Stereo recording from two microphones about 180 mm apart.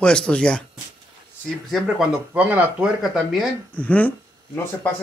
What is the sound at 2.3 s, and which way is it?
Speech, 10° right (ahead or behind).